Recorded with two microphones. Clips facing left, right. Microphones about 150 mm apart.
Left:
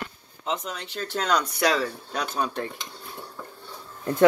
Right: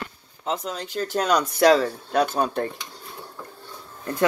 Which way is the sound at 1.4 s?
40° right (ahead or behind).